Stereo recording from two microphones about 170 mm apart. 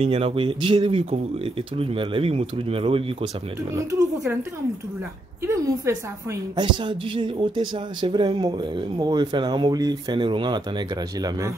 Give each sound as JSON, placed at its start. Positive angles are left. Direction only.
{"t": 0.0, "sound": "speech", "side_deg": -35}
{"t": 5.4, "sound": "a woman's voice", "side_deg": -15}
{"t": 6.5, "sound": "speech", "side_deg": -30}